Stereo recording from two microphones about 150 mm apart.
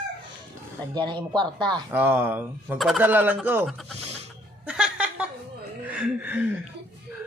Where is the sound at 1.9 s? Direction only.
15° right (ahead or behind).